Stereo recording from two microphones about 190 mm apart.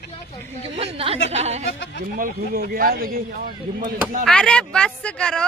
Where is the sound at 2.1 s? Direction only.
50° right (ahead or behind).